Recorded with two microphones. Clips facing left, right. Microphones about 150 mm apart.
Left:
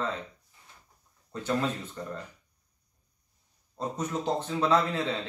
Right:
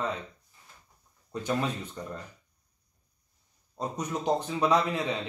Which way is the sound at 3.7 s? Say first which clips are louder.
Left 1 dB; 15° right (ahead or behind).